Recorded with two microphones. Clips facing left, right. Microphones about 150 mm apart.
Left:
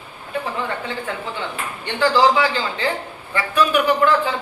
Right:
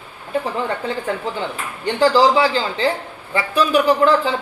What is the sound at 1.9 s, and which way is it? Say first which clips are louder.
A man's voice: right 2 dB; 35° right (ahead or behind).